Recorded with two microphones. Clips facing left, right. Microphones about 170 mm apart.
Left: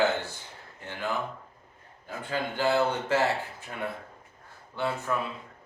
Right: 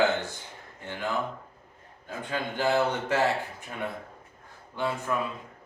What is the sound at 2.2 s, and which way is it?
Speech, 15° right (ahead or behind).